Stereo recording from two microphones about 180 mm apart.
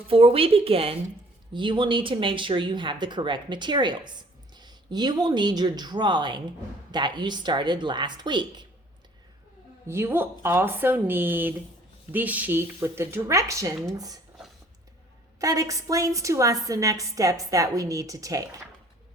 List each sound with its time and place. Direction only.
0.1 s speech: 30° right (ahead or behind)
9.8 s speech: 15° right (ahead or behind)
15.4 s speech: 20° right (ahead or behind)